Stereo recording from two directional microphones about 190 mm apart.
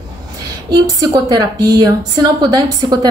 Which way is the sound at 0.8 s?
20° right (ahead or behind).